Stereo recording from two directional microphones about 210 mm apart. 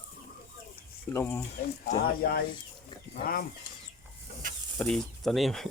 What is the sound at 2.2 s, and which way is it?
Speech, 45° left (ahead or behind).